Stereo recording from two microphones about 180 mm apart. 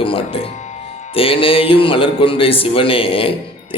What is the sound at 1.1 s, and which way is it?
A man's voice, 30° left (ahead or behind).